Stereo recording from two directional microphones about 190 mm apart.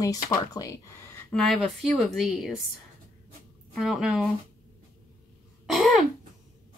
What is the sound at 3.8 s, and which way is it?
Speech, 5° right (ahead or behind).